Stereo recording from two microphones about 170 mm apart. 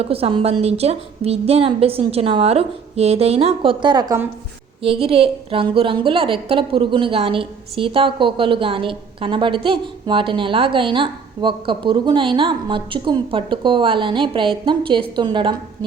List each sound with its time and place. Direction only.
0.0 s a woman's voice: 35° right (ahead or behind)